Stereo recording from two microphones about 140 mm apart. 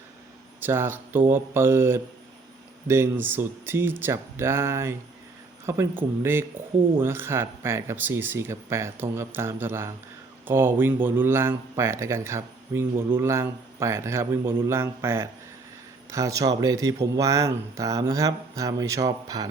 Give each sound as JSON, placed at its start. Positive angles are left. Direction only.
{"t": 0.6, "sound": "speech", "side_deg": -15}